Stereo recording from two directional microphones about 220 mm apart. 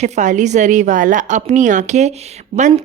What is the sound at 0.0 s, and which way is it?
Speech, 35° right (ahead or behind).